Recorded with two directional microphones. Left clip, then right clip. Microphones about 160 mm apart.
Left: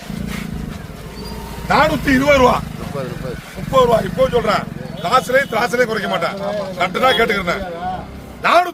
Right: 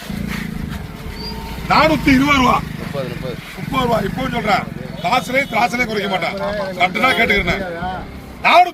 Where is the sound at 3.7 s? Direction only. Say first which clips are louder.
Left 5 dB; 60° left (ahead or behind).